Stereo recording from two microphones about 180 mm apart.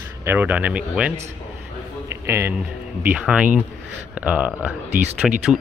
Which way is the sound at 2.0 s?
10° right (ahead or behind).